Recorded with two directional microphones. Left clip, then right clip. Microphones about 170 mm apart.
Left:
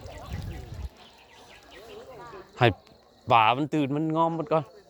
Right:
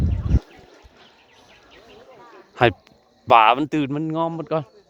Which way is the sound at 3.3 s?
75° right (ahead or behind).